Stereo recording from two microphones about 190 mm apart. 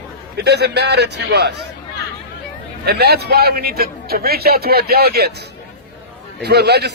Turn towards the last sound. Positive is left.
turn(degrees=-60)  # may be behind; listen again after turning